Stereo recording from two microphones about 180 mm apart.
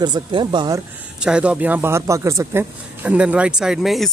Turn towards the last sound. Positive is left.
turn(degrees=0)  # may be behind; listen again after turning